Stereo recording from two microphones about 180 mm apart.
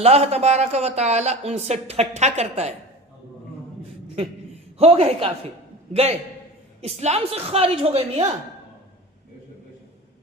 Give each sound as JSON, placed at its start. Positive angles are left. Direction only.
{"t": 0.0, "sound": "speech", "side_deg": -35}
{"t": 4.8, "sound": "speech", "side_deg": -35}